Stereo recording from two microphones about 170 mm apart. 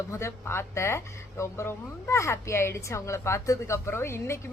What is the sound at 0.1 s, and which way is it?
Speech, 15° left (ahead or behind).